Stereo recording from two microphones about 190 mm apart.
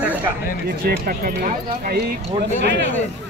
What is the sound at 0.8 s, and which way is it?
Speech, 50° right (ahead or behind).